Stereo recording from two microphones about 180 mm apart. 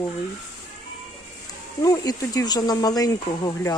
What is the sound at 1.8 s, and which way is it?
Speech, 20° left (ahead or behind).